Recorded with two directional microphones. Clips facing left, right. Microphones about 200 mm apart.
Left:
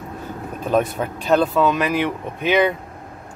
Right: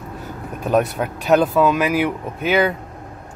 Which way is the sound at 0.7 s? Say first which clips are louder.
Right 1 dB; 10° right (ahead or behind).